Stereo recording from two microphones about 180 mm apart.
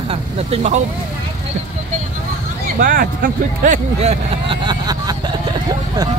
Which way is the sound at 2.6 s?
50° right (ahead or behind).